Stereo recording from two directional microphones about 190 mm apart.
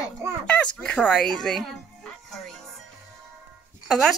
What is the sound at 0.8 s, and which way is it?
Speech, 5° left (ahead or behind).